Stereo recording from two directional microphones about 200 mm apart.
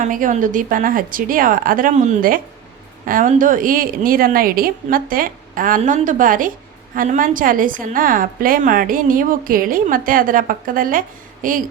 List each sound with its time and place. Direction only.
0.0 s a woman's voice: 40° right (ahead or behind)